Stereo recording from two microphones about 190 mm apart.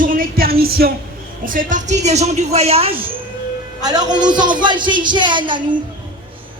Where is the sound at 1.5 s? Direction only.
45° right (ahead or behind).